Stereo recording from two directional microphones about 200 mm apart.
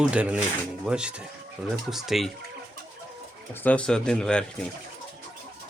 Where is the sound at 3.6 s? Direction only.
5° left (ahead or behind).